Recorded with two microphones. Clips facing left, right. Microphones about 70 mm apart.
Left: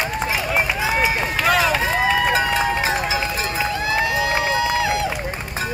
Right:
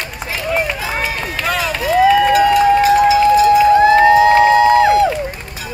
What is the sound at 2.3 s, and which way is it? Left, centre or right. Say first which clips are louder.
Run: right 9 dB; left.